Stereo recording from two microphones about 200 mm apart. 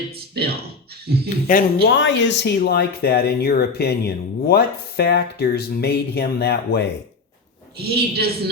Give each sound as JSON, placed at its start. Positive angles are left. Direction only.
{"t": 0.1, "sound": "a woman's voice", "side_deg": -50}
{"t": 1.5, "sound": "speech", "side_deg": 45}
{"t": 2.0, "sound": "speech", "side_deg": 65}
{"t": 7.8, "sound": "a woman's voice", "side_deg": -50}